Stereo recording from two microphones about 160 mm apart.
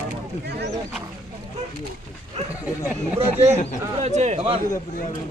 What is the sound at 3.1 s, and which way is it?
Speech, 45° right (ahead or behind).